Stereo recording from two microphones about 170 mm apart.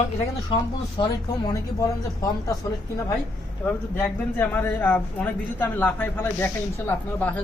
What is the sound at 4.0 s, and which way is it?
A man's voice, 10° left (ahead or behind).